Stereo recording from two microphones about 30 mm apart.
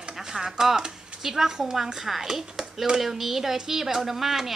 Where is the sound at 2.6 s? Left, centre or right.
Centre.